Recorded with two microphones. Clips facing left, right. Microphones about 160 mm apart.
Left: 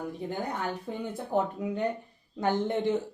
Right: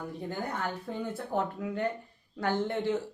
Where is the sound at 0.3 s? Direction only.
15° left (ahead or behind).